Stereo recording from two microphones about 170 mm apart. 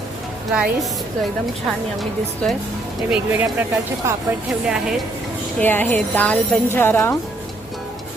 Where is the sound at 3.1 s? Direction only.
10° right (ahead or behind).